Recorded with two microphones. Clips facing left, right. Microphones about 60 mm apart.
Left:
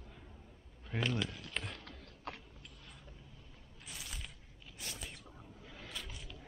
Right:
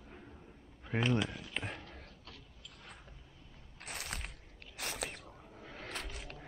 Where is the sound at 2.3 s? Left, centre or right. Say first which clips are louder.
Left 12 dB; left.